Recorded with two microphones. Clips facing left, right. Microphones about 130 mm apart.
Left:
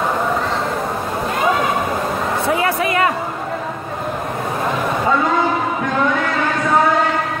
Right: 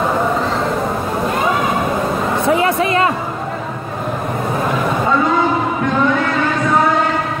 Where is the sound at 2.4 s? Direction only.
25° right (ahead or behind).